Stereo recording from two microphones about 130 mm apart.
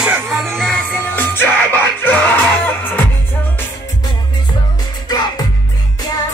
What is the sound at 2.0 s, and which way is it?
Music, 15° left (ahead or behind).